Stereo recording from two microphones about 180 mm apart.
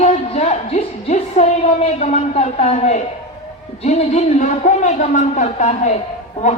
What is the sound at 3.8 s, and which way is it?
A man's voice, 40° left (ahead or behind).